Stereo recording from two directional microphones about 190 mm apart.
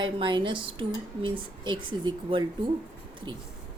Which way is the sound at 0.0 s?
25° right (ahead or behind).